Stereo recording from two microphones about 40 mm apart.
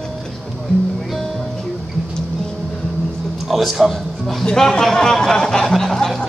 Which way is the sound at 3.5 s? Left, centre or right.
Centre.